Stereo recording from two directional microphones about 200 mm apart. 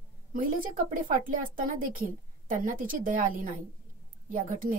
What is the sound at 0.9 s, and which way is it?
A woman's voice, 40° right (ahead or behind).